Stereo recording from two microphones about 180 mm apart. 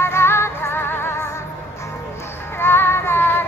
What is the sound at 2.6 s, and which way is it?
Child singing, 10° left (ahead or behind).